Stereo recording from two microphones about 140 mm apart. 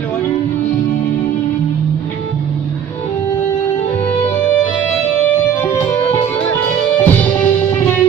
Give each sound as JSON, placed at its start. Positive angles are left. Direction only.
{"t": 5.5, "sound": "music", "side_deg": 20}
{"t": 6.9, "sound": "music", "side_deg": 10}